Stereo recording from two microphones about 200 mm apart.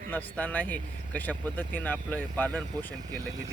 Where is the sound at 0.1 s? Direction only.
10° left (ahead or behind).